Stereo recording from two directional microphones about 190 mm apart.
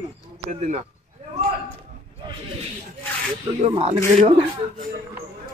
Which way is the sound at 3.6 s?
30° right (ahead or behind).